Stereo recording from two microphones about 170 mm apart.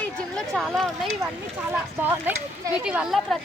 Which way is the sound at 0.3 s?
Centre (ahead or behind).